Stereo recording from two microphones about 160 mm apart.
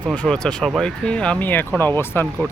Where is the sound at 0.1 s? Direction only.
5° left (ahead or behind).